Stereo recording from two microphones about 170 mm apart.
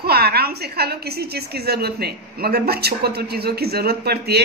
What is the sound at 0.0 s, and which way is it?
A woman's voice, 65° right (ahead or behind).